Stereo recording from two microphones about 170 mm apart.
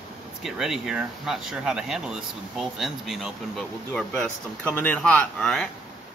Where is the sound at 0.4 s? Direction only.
Centre (ahead or behind).